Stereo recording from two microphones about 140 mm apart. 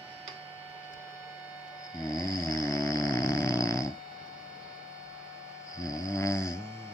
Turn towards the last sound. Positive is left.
turn(degrees=20)  # may be behind; listen again after turning